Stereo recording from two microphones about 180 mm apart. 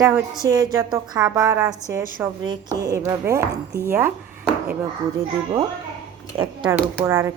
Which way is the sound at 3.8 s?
10° right (ahead or behind).